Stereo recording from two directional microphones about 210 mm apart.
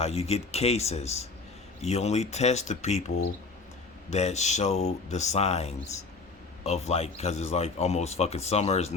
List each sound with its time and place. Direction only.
0.0 s speech: 30° left (ahead or behind)
4.1 s speech: 30° left (ahead or behind)